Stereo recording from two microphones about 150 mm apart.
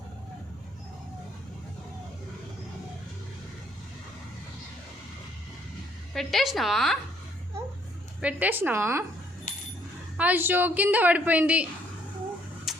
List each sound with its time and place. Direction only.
6.1 s a woman's voice: centre (ahead or behind)
8.2 s a woman's voice: 10° right (ahead or behind)
9.5 s coin: 55° left (ahead or behind)
10.2 s a woman's voice: 10° right (ahead or behind)
12.7 s vehicle: centre (ahead or behind)